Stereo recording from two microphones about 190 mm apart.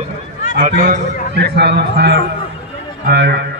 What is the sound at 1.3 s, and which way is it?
A man's voice, 60° right (ahead or behind).